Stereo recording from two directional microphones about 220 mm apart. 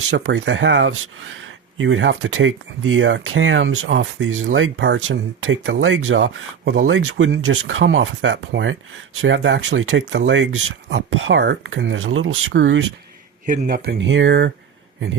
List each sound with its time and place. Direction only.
0.1 s speech: 60° right (ahead or behind)
13.4 s speech: 35° right (ahead or behind); by 14.5 s 55° right (ahead or behind)